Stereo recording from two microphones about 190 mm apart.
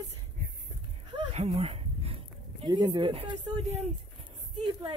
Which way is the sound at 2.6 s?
20° right (ahead or behind).